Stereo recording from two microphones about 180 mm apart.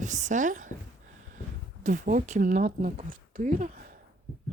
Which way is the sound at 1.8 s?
45° right (ahead or behind).